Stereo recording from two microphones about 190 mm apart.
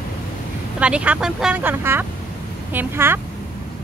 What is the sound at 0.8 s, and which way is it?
Speech, 5° right (ahead or behind).